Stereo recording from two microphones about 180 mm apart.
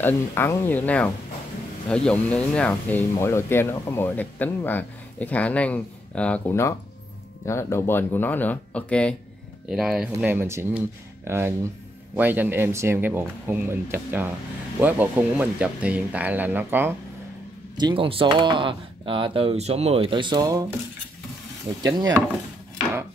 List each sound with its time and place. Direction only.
0.0 s speech: 15° left (ahead or behind); by 16.9 s 10° right (ahead or behind)
17.7 s speech: 25° right (ahead or behind)
21.8 s speech: 20° right (ahead or behind)